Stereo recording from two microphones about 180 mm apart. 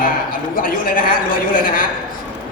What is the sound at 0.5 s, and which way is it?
A man's voice, 50° left (ahead or behind).